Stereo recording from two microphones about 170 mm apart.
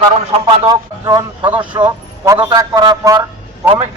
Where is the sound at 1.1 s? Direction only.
20° right (ahead or behind).